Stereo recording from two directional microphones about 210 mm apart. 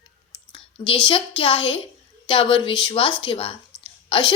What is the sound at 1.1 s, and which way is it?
A woman's voice, 25° left (ahead or behind).